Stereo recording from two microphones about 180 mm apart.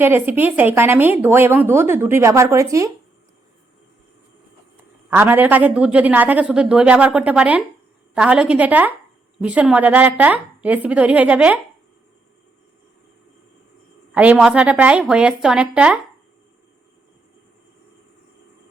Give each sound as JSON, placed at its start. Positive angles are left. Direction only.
{"t": 0.0, "sound": "speech", "side_deg": -10}
{"t": 5.1, "sound": "speech", "side_deg": -10}
{"t": 14.1, "sound": "a woman's voice", "side_deg": -5}